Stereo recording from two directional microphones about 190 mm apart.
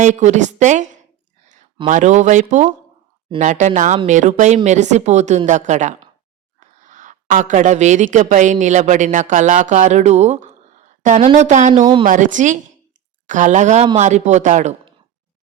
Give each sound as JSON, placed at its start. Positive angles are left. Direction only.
{"t": 0.0, "sound": "speech", "side_deg": -40}
{"t": 1.9, "sound": "a woman's voice", "side_deg": -40}